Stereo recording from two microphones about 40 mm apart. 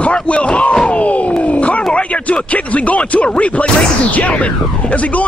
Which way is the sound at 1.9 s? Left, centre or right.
Left.